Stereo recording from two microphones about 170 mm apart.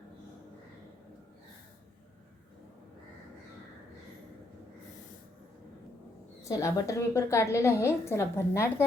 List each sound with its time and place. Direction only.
6.4 s a woman's voice: 15° left (ahead or behind)